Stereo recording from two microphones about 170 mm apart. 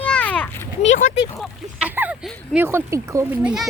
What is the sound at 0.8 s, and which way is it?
Speech, 45° left (ahead or behind).